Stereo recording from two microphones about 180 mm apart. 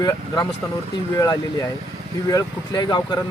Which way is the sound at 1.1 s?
20° left (ahead or behind).